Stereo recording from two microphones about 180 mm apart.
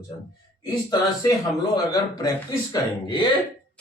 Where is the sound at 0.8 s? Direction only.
20° left (ahead or behind).